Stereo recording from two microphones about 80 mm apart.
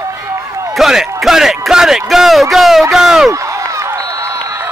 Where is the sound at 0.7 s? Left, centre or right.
Centre.